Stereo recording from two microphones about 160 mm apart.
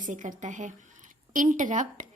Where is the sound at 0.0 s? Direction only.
50° right (ahead or behind).